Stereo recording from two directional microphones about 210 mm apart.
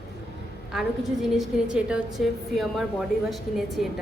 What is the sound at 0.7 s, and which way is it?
A woman's voice, centre (ahead or behind).